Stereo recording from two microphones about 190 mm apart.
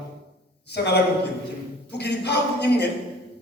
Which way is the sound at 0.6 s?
60° left (ahead or behind).